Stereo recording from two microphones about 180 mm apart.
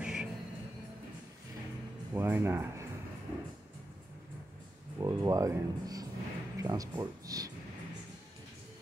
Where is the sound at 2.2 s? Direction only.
15° right (ahead or behind).